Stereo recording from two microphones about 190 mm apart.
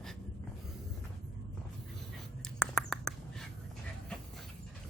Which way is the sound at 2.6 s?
Centre (ahead or behind).